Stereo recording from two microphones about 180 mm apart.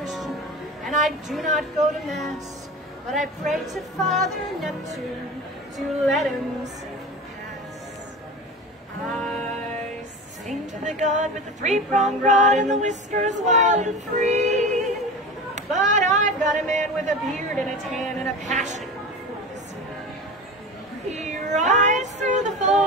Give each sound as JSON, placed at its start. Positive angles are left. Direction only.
{"t": 0.8, "sound": "speech", "side_deg": 0}
{"t": 3.7, "sound": "speech", "side_deg": 0}
{"t": 5.8, "sound": "speech", "side_deg": 0}
{"t": 9.0, "sound": "music", "side_deg": 0}
{"t": 10.8, "sound": "a sound", "side_deg": -40}
{"t": 15.5, "sound": "speech", "side_deg": -40}
{"t": 17.3, "sound": "speech", "side_deg": 0}
{"t": 18.4, "sound": "a sound", "side_deg": -40}
{"t": 21.1, "sound": "child singing", "side_deg": -40}